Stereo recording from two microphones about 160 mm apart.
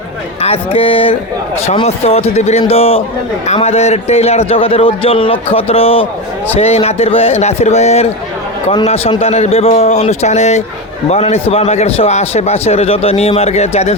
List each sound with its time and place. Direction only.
0.4 s a man's voice: 35° left (ahead or behind)